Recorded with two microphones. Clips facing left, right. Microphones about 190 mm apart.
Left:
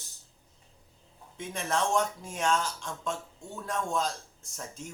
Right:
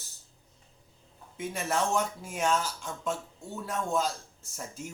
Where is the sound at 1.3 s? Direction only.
5° right (ahead or behind).